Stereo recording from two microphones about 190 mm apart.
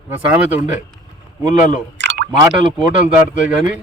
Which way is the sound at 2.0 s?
65° right (ahead or behind).